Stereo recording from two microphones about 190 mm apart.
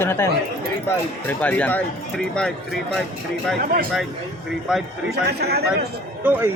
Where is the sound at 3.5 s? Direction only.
55° right (ahead or behind).